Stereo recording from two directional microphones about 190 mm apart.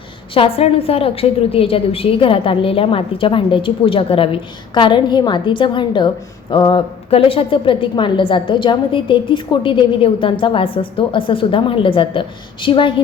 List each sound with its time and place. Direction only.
0.3 s a woman's voice: 30° left (ahead or behind)